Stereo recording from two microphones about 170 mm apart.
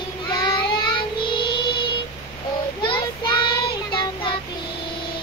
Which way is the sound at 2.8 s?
30° left (ahead or behind).